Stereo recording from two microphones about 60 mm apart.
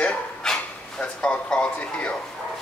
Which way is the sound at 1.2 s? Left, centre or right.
Centre.